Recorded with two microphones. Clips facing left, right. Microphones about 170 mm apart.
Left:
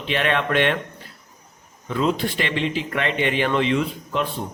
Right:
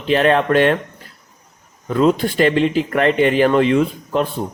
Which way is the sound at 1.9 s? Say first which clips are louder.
Right 7 dB; 45° right (ahead or behind).